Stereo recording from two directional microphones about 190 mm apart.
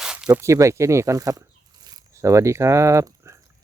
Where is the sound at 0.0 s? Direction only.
5° right (ahead or behind).